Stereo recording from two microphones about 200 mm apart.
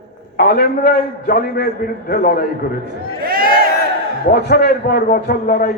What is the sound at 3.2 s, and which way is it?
Crowd, 45° right (ahead or behind).